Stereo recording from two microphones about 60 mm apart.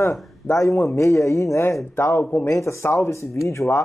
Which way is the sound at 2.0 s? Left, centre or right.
Left.